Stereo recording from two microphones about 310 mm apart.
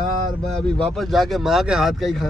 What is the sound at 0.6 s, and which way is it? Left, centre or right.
Speech, centre.